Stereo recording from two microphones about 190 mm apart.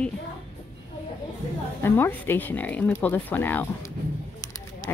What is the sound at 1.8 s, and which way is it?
Speech, 10° left (ahead or behind).